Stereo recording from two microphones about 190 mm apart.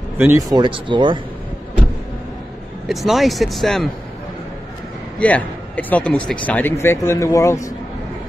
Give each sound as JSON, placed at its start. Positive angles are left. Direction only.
{"t": 0.2, "sound": "speech", "side_deg": -15}
{"t": 2.9, "sound": "speech", "side_deg": 0}
{"t": 5.2, "sound": "speech", "side_deg": 10}